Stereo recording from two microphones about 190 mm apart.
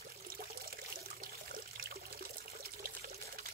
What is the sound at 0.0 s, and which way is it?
Water, 50° right (ahead or behind).